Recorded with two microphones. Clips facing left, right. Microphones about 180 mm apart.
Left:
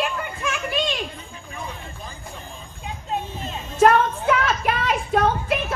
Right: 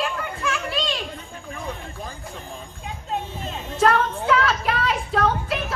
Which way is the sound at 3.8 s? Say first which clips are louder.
Left 3 dB; 20° left (ahead or behind).